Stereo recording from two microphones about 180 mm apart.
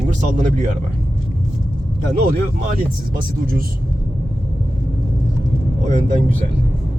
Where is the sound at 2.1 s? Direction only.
55° right (ahead or behind).